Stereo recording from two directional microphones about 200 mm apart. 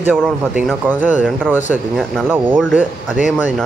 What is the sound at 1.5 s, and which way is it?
Speech, 10° right (ahead or behind).